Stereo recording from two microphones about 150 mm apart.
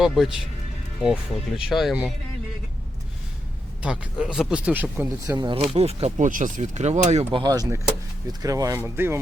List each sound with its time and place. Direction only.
0.0 s speech: centre (ahead or behind)
3.8 s speech: 5° right (ahead or behind)
5.4 s speech: 30° right (ahead or behind)
5.7 s speech: 45° right (ahead or behind)
7.3 s speech: 25° right (ahead or behind)